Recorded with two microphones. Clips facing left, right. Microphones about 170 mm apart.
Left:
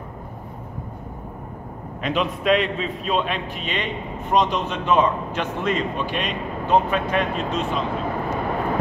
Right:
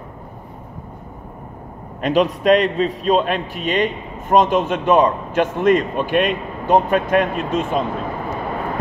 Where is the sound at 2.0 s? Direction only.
45° right (ahead or behind).